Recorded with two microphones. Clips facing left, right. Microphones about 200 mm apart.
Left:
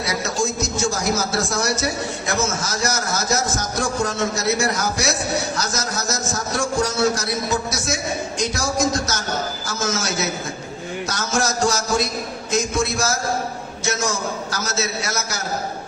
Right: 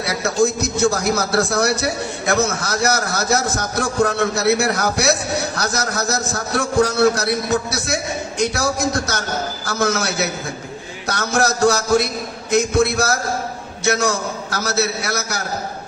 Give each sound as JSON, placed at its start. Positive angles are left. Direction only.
{"t": 0.0, "sound": "a man's voice", "side_deg": -60}